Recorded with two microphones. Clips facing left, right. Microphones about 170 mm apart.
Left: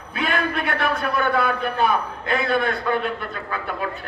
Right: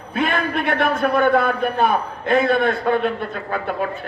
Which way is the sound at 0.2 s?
45° right (ahead or behind).